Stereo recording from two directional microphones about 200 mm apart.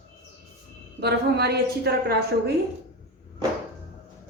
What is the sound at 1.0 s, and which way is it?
A woman's voice, 55° right (ahead or behind).